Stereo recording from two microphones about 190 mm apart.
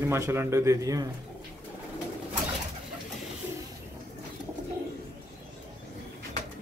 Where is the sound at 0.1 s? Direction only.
15° right (ahead or behind).